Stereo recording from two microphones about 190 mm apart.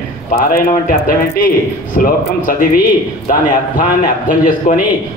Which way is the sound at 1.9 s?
45° left (ahead or behind).